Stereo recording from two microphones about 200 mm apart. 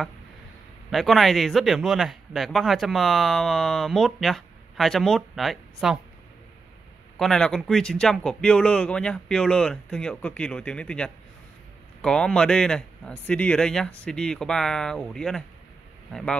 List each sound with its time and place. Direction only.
0.8 s speech: centre (ahead or behind)
7.2 s speech: centre (ahead or behind)